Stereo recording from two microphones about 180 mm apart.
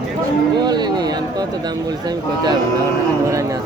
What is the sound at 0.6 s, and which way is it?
Speech, 25° right (ahead or behind).